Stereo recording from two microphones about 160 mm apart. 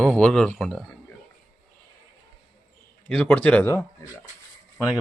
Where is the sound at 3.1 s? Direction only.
5° left (ahead or behind).